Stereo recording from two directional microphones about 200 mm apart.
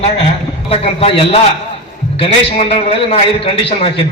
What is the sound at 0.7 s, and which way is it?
A man's voice, 30° left (ahead or behind).